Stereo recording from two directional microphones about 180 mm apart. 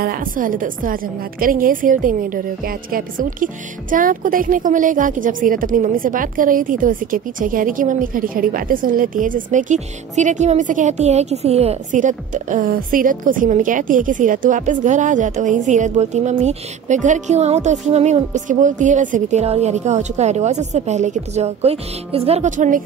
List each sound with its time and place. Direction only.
0.0 s a woman's voice: 50° right (ahead or behind)